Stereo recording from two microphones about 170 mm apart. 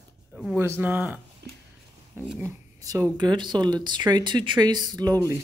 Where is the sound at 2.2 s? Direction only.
10° right (ahead or behind).